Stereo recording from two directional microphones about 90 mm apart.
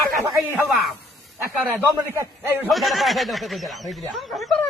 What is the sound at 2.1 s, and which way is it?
Speech, 35° right (ahead or behind).